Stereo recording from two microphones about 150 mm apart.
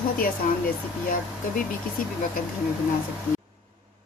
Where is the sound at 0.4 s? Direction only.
60° left (ahead or behind).